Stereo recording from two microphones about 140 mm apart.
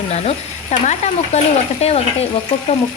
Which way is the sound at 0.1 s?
50° left (ahead or behind).